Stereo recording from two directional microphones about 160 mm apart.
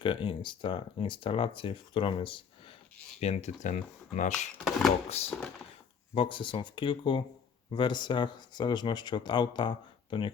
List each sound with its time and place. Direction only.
0.0 s speech: 30° left (ahead or behind)
3.2 s speech: 45° left (ahead or behind)